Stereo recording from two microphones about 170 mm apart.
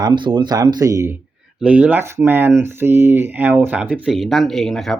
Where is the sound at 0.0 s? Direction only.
30° right (ahead or behind).